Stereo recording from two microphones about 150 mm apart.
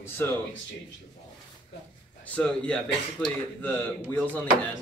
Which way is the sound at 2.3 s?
5° left (ahead or behind).